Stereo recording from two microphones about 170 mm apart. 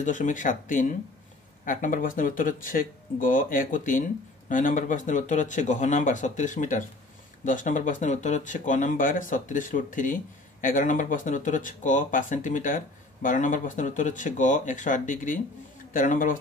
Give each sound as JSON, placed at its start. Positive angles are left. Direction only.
{"t": 0.0, "sound": "speech", "side_deg": 50}